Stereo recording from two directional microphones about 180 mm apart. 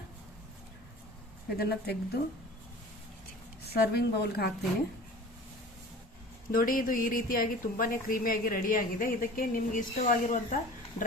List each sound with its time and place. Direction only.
1.5 s speech: 60° left (ahead or behind)
3.6 s speech: 65° left (ahead or behind)
6.5 s speech: 50° left (ahead or behind)